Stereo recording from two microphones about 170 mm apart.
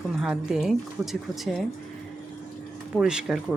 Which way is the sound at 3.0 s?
5° right (ahead or behind).